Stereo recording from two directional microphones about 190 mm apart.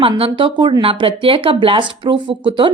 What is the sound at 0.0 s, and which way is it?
Speech, 30° right (ahead or behind).